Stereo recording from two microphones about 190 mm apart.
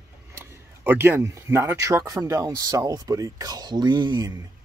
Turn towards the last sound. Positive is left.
turn(degrees=-20)  # may be behind; listen again after turning